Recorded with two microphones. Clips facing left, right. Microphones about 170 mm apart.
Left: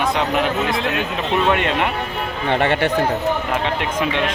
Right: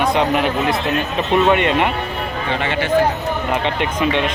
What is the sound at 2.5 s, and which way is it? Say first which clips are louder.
Speech: left 5 dB; 55° left (ahead or behind).